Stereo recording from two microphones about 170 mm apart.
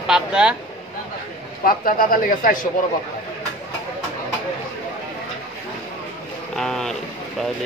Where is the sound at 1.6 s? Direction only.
55° left (ahead or behind).